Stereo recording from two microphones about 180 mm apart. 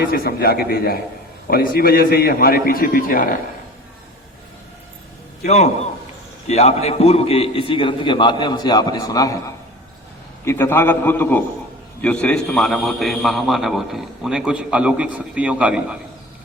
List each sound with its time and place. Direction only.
0.0 s a man's voice: 60° left (ahead or behind)
5.5 s a man's voice: 40° left (ahead or behind); by 9.3 s 20° left (ahead or behind)
10.4 s a man's voice: 15° left (ahead or behind); by 16.0 s 5° right (ahead or behind)